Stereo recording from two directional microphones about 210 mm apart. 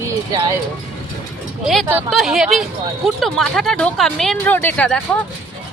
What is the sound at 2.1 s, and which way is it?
Speech, centre (ahead or behind).